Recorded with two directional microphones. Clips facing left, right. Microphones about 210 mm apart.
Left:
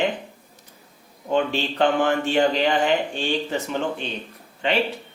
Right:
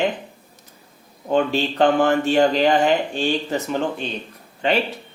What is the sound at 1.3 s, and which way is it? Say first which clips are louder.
A man's voice: right 3 dB; 40° right (ahead or behind).